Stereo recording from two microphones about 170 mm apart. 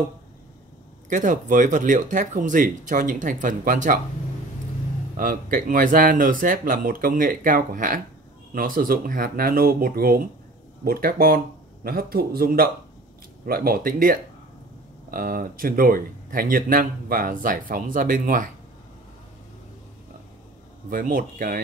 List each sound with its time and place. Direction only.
1.0 s speech: 45° right (ahead or behind)
5.1 s speech: 55° right (ahead or behind)
20.9 s speech: 55° right (ahead or behind)